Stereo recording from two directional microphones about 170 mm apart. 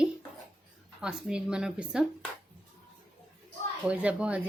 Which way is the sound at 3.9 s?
5° right (ahead or behind).